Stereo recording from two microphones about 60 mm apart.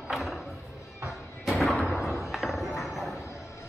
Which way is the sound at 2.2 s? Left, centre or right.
Centre.